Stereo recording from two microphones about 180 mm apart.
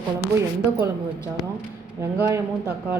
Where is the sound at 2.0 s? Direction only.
15° right (ahead or behind).